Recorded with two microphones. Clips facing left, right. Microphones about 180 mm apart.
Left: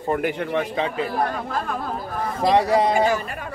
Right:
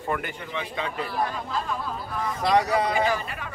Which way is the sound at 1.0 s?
50° left (ahead or behind).